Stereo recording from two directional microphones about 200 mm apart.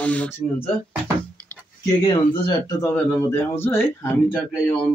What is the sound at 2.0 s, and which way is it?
Speech, 20° left (ahead or behind).